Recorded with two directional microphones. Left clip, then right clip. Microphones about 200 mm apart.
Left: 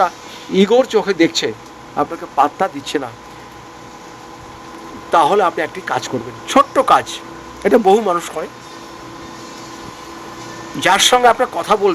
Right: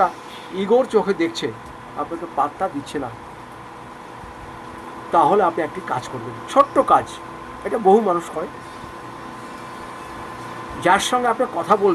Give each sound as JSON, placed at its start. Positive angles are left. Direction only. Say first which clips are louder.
{"t": 0.5, "sound": "speech", "louder": "left 5 dB", "side_deg": 50}
{"t": 2.0, "sound": "speech", "louder": "left 7 dB", "side_deg": 60}
{"t": 5.1, "sound": "speech", "louder": "left 3 dB", "side_deg": 55}
{"t": 6.5, "sound": "speech", "louder": "left 3 dB", "side_deg": 50}
{"t": 10.8, "sound": "speech", "louder": "left 6 dB", "side_deg": 65}